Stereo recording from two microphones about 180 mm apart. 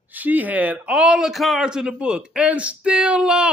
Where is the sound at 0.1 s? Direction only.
10° right (ahead or behind).